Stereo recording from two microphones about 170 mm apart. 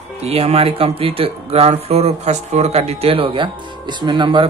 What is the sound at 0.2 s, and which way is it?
Speech, 35° right (ahead or behind).